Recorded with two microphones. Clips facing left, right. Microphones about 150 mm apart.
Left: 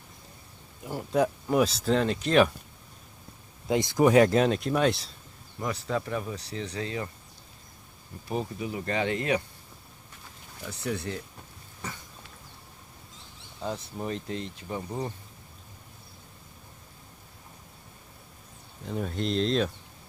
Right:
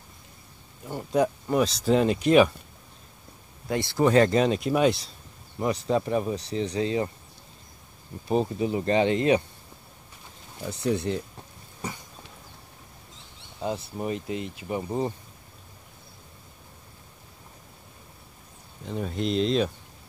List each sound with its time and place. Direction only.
0.8 s speech: 5° left (ahead or behind)
1.9 s speech: 10° right (ahead or behind)
3.6 s speech: 20° left (ahead or behind); by 5.1 s centre (ahead or behind)
5.6 s speech: 20° right (ahead or behind)
8.3 s speech: 25° right (ahead or behind)
10.6 s speech: 20° right (ahead or behind)
11.8 s a sound: 15° right (ahead or behind)
13.6 s speech: 15° right (ahead or behind)
18.9 s speech: centre (ahead or behind)